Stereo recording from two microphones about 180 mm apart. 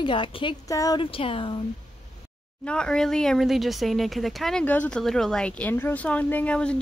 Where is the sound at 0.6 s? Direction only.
20° left (ahead or behind).